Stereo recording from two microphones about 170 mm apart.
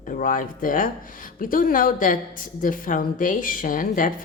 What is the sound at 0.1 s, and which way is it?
Speech, 55° left (ahead or behind).